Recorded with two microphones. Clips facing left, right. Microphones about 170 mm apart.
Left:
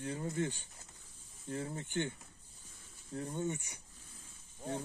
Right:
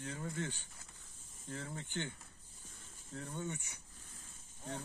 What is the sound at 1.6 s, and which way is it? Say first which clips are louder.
Speech: left 5 dB; 15° left (ahead or behind).